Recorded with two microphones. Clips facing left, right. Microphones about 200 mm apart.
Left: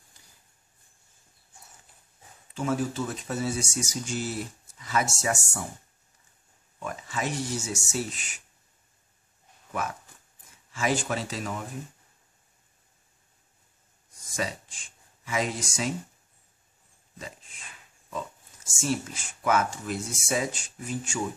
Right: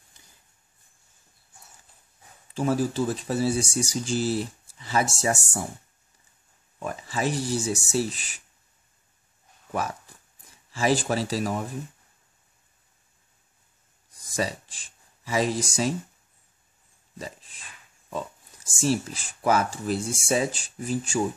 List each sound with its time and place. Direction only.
2.5 s speech: 35° right (ahead or behind)
6.8 s speech: 35° right (ahead or behind)
9.7 s speech: 35° right (ahead or behind)
14.3 s speech: 35° right (ahead or behind)
17.2 s dog: 35° right (ahead or behind)
18.7 s speech: 35° right (ahead or behind)